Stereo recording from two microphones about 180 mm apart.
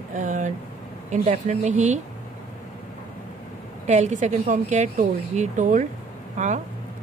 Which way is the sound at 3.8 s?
40° right (ahead or behind).